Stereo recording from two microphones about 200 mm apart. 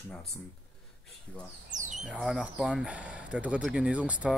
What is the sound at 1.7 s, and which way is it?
Speech, 40° right (ahead or behind).